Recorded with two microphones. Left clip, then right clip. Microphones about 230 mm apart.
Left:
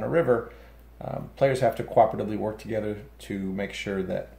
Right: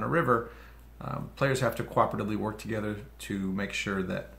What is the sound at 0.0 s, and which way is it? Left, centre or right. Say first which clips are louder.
Speech: left 3 dB; centre.